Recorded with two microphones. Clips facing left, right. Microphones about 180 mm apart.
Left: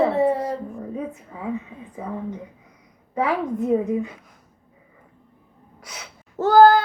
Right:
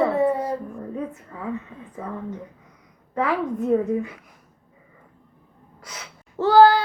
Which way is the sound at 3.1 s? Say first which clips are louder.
Left 1 dB; 10° left (ahead or behind).